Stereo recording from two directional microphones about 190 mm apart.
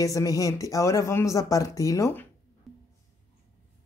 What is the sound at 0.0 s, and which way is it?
Speech, 20° left (ahead or behind).